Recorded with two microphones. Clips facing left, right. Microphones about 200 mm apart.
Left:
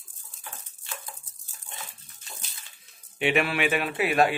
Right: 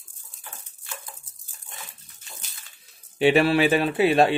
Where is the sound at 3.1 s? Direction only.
35° right (ahead or behind).